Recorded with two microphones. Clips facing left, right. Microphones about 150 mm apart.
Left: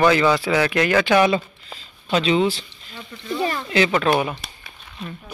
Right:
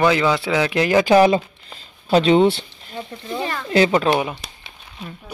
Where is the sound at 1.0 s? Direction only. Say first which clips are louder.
Right 5 dB; 35° right (ahead or behind).